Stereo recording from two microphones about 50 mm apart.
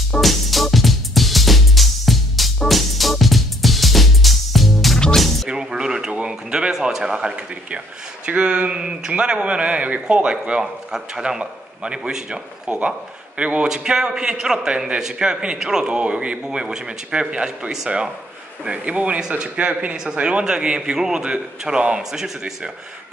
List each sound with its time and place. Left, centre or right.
0.2 s music: centre
5.5 s music: centre
6.1 s a sound: centre
6.7 s a man's voice: centre